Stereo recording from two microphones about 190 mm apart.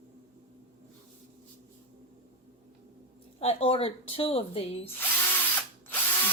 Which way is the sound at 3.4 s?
30° left (ahead or behind).